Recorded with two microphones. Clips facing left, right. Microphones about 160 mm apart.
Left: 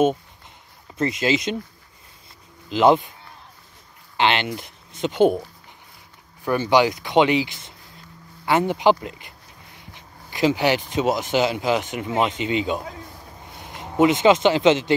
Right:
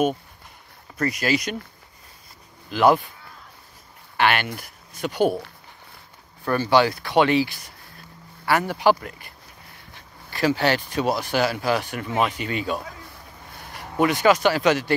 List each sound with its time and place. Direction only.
0.9 s speech: 25° left (ahead or behind)
2.7 s speech: 20° left (ahead or behind)
4.2 s speech: 20° left (ahead or behind)
6.4 s speech: 15° left (ahead or behind)